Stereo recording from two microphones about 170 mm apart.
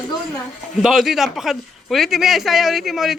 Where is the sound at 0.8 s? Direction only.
Centre (ahead or behind).